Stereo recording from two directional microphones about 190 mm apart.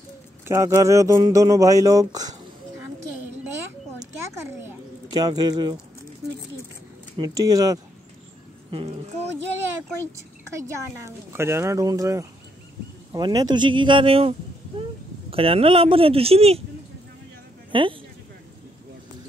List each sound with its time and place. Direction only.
0.5 s a man's voice: 15° right (ahead or behind)
5.1 s speech: 20° right (ahead or behind)
7.2 s speech: 20° right (ahead or behind)
8.6 s speech: 30° right (ahead or behind)
11.1 s a man's voice: 15° right (ahead or behind); by 14.3 s 30° right (ahead or behind)
15.3 s speech: 30° right (ahead or behind)
17.6 s a man's voice: 25° right (ahead or behind)